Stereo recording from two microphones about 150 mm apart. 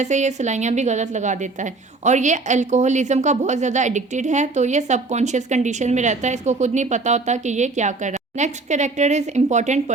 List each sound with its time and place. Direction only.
0.0 s a woman's voice: 50° right (ahead or behind)